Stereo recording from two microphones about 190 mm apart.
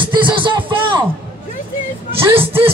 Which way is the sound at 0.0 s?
25° right (ahead or behind).